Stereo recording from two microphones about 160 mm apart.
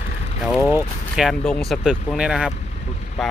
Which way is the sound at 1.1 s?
Centre (ahead or behind).